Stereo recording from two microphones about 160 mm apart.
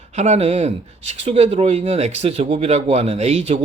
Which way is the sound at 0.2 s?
45° right (ahead or behind).